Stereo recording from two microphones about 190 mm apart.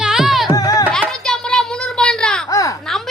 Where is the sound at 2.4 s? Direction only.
20° left (ahead or behind).